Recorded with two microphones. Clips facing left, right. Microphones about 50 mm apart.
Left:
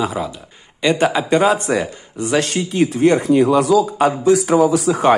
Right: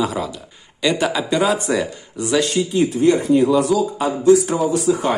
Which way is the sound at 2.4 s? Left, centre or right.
Left.